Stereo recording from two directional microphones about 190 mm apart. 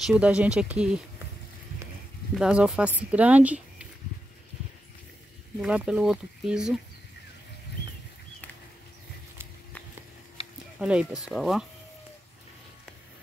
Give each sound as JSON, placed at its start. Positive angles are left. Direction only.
{"t": 0.0, "sound": "speech", "side_deg": -5}
{"t": 2.3, "sound": "speech", "side_deg": -5}
{"t": 5.6, "sound": "speech", "side_deg": -5}
{"t": 10.4, "sound": "a sound", "side_deg": 30}
{"t": 10.8, "sound": "speech", "side_deg": -5}